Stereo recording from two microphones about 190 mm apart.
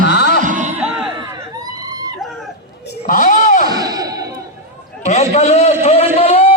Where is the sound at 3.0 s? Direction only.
45° left (ahead or behind).